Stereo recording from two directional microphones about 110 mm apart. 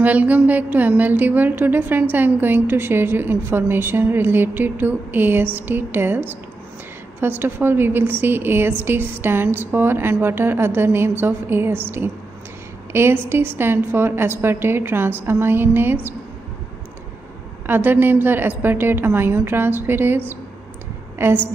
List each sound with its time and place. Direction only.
0.0 s a woman's voice: 15° right (ahead or behind)
17.6 s a woman's voice: 20° right (ahead or behind)
21.2 s a woman's voice: 20° right (ahead or behind)